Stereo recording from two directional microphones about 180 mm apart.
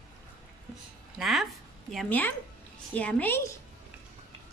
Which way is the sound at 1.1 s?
Centre (ahead or behind).